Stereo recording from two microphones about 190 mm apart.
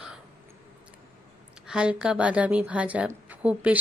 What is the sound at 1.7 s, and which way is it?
Speech, 5° right (ahead or behind).